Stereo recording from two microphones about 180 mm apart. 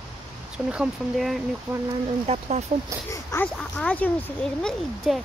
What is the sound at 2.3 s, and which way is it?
Speech, 40° right (ahead or behind).